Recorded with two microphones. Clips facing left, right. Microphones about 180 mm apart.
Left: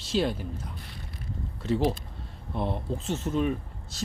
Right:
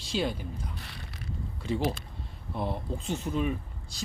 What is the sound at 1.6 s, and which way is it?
Speech, centre (ahead or behind).